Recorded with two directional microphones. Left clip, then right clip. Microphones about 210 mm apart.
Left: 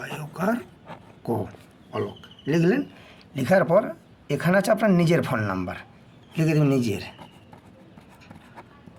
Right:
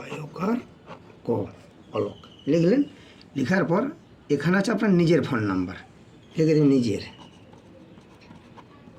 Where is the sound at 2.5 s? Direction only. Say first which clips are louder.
Right 2 dB; 50° left (ahead or behind).